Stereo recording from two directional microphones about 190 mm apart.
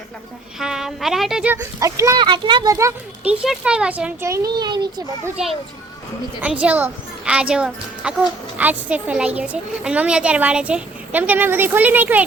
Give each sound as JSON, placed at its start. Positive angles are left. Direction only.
{"t": 0.6, "sound": "speech", "side_deg": -5}
{"t": 1.8, "sound": "a child's voice", "side_deg": -15}
{"t": 3.4, "sound": "speech", "side_deg": -5}
{"t": 4.5, "sound": "a child's voice", "side_deg": -20}
{"t": 6.4, "sound": "a child's voice", "side_deg": -5}